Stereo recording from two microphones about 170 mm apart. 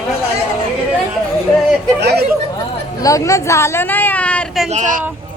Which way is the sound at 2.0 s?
70° right (ahead or behind).